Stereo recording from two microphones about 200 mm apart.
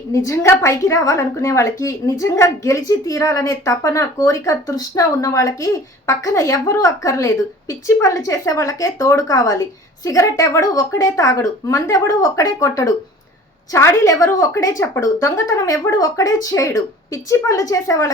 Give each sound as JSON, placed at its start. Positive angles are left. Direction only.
{"t": 0.1, "sound": "a woman's voice", "side_deg": 15}